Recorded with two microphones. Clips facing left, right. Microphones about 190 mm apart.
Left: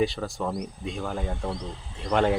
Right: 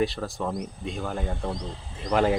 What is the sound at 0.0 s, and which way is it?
Speech, centre (ahead or behind).